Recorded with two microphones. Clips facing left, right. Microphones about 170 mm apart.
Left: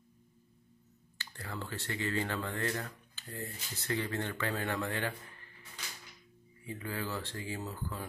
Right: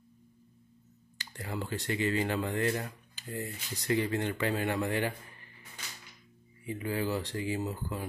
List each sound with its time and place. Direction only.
1.1 s speech: 15° right (ahead or behind)
6.6 s speech: 15° right (ahead or behind)